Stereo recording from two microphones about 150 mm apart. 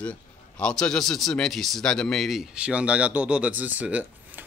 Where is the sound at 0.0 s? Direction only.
5° left (ahead or behind).